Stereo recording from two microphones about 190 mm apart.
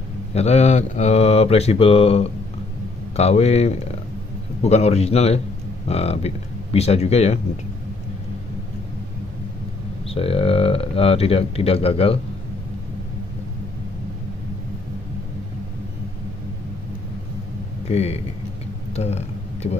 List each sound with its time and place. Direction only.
0.3 s speech: 35° left (ahead or behind)
10.0 s speech: 30° left (ahead or behind)
17.8 s speech: 35° left (ahead or behind)
18.9 s a sound: 35° left (ahead or behind)